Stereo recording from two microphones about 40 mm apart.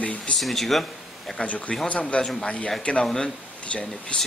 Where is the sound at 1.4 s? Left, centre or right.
Left.